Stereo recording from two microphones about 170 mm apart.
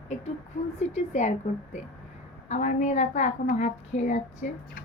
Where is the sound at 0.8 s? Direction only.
40° left (ahead or behind).